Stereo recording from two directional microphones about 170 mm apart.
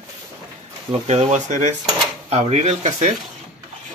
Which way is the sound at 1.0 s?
40° right (ahead or behind).